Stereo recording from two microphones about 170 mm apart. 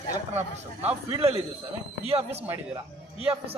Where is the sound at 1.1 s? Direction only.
35° right (ahead or behind).